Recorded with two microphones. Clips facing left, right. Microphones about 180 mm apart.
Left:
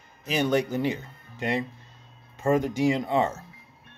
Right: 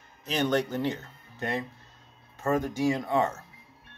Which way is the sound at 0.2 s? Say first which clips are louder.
Left 2 dB; 10° left (ahead or behind).